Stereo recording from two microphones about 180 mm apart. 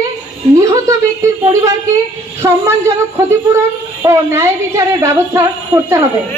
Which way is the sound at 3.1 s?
15° right (ahead or behind).